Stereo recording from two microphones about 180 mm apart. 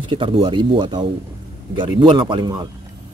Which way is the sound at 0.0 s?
30° right (ahead or behind).